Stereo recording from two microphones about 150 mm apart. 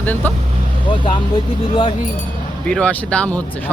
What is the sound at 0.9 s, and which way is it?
Speech, 35° left (ahead or behind).